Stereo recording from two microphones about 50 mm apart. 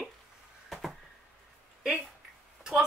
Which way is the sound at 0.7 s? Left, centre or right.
Centre.